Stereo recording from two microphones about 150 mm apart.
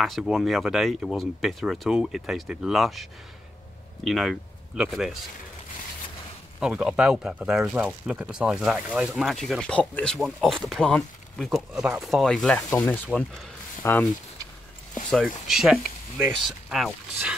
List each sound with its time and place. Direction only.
0.0 s speech: centre (ahead or behind)
6.6 s speech: 5° right (ahead or behind); by 14.0 s 15° left (ahead or behind)
15.0 s speech: centre (ahead or behind)